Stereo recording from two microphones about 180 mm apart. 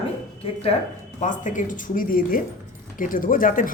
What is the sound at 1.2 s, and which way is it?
Speech, 45° left (ahead or behind).